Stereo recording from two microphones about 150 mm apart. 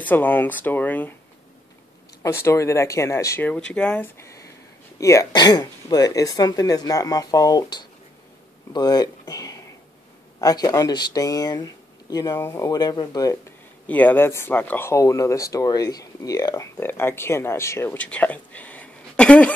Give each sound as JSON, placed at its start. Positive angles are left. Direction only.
{"t": 0.0, "sound": "speech", "side_deg": 10}
{"t": 2.2, "sound": "speech", "side_deg": 20}
{"t": 4.2, "sound": "a sound", "side_deg": 20}
{"t": 5.0, "sound": "speech", "side_deg": 20}
{"t": 13.8, "sound": "speech", "side_deg": 10}
{"t": 16.7, "sound": "speech", "side_deg": 15}